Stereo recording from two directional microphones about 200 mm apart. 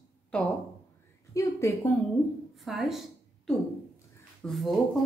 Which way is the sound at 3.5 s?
5° left (ahead or behind).